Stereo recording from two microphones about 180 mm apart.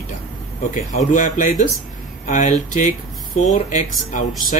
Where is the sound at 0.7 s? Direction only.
40° left (ahead or behind).